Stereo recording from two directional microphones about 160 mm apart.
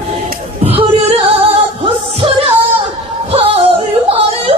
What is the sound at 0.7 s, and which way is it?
Music, 35° right (ahead or behind).